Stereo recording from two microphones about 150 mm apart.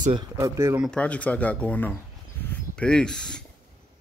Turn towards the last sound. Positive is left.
turn(degrees=5)  # may be behind; listen again after turning